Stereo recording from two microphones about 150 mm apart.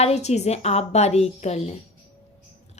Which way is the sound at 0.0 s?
45° left (ahead or behind).